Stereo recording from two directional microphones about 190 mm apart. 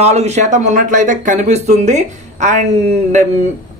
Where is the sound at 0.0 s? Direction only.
35° right (ahead or behind).